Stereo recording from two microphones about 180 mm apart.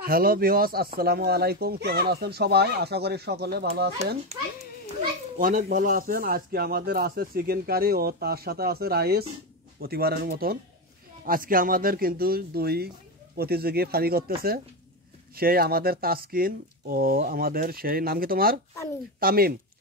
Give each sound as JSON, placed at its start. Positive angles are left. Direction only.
{"t": 0.0, "sound": "speech", "side_deg": -55}
{"t": 5.4, "sound": "speech", "side_deg": -45}